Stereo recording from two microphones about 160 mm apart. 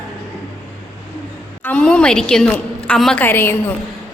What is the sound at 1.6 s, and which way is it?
A woman's voice, 10° left (ahead or behind).